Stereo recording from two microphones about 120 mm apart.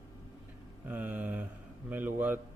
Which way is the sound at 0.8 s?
15° right (ahead or behind).